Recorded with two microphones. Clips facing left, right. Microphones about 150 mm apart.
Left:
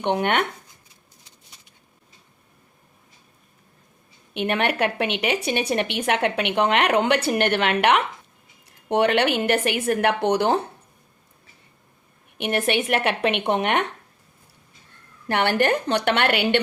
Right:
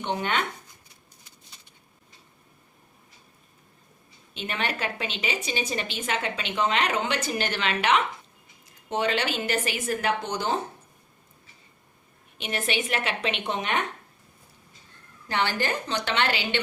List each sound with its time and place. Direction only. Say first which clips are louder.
0.0 s a woman's voice: left 6 dB; 65° left (ahead or behind)
4.4 s a woman's voice: left 9 dB; 60° left (ahead or behind)
12.4 s a woman's voice: left 7 dB; 60° left (ahead or behind)
15.3 s a woman's voice: left 7 dB; 65° left (ahead or behind)